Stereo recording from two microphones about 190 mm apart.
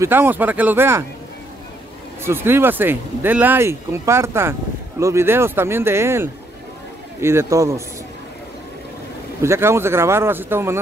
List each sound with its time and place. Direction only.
0.0 s speech: 10° right (ahead or behind)
2.2 s speech: 10° right (ahead or behind)
9.4 s speech: 15° right (ahead or behind)